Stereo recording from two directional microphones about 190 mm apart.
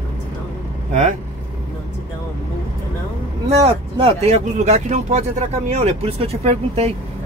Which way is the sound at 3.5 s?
30° right (ahead or behind).